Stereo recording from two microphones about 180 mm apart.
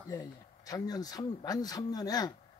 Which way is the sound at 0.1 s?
20° left (ahead or behind).